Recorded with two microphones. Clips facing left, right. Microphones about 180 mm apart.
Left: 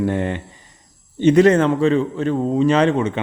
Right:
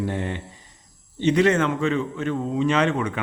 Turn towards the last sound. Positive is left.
turn(degrees=25)  # may be behind; listen again after turning